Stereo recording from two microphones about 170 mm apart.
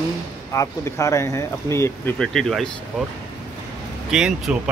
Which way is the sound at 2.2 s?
Centre (ahead or behind).